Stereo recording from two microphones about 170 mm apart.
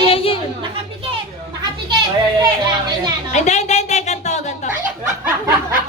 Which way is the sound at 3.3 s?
45° left (ahead or behind).